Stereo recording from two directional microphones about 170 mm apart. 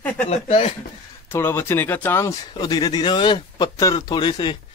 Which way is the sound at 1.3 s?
15° left (ahead or behind).